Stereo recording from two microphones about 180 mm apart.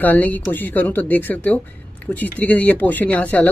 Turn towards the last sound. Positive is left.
turn(degrees=10)  # may be behind; listen again after turning